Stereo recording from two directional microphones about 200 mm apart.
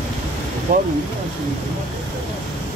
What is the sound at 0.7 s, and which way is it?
Speech, 45° right (ahead or behind).